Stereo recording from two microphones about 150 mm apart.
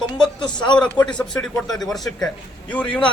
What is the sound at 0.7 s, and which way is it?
A man's voice, 5° left (ahead or behind).